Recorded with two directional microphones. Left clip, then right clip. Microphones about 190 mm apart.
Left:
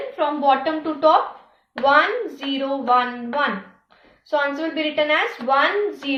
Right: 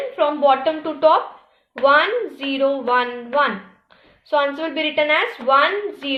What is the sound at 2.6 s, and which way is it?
A woman's voice, 40° right (ahead or behind).